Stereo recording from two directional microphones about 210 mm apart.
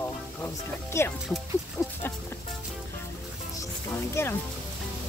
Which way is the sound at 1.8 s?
10° left (ahead or behind).